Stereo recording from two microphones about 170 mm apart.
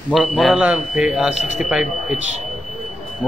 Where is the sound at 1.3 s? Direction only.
40° left (ahead or behind).